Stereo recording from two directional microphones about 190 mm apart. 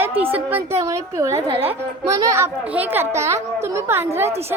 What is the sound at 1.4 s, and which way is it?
Speech, 25° right (ahead or behind).